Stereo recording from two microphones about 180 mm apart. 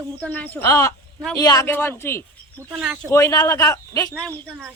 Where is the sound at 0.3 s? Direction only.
10° left (ahead or behind).